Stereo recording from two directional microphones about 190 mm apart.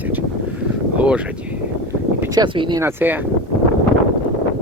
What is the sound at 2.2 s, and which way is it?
Speech, 20° right (ahead or behind).